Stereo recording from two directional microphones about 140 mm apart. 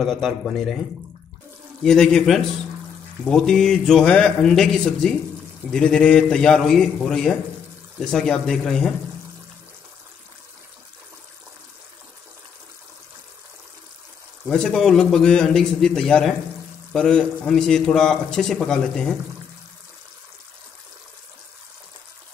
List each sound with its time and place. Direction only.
0.0 s a man's voice: centre (ahead or behind)
1.8 s a man's voice: 5° left (ahead or behind)
14.5 s a man's voice: 5° left (ahead or behind)